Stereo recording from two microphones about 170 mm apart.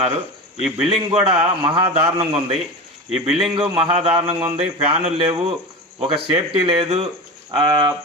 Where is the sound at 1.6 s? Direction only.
35° right (ahead or behind).